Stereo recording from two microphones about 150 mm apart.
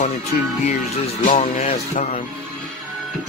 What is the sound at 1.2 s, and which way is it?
Speech, 55° left (ahead or behind).